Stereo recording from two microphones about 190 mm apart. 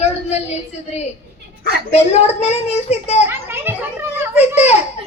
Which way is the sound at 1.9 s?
35° left (ahead or behind).